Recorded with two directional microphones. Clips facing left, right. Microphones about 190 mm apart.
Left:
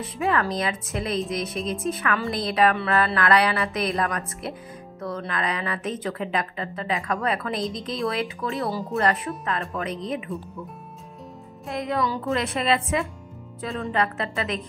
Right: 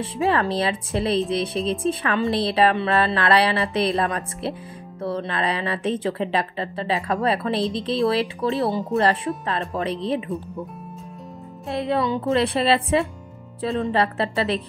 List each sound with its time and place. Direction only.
0.0 s a woman's voice: 30° right (ahead or behind)
11.7 s a woman's voice: 30° right (ahead or behind)